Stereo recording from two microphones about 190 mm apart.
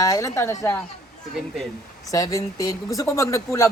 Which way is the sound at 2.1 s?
20° left (ahead or behind).